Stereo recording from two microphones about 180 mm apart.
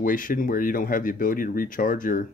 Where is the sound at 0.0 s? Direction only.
50° left (ahead or behind).